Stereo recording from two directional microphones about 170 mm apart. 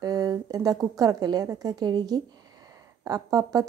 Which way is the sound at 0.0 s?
20° right (ahead or behind).